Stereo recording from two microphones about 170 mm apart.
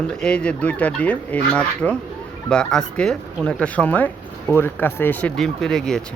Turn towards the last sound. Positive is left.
turn(degrees=5)  # may be behind; listen again after turning